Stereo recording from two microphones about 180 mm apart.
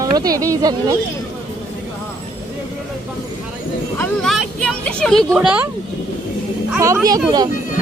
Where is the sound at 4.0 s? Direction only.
Centre (ahead or behind).